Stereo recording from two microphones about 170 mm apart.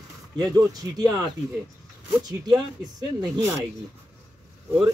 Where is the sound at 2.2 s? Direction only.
25° right (ahead or behind).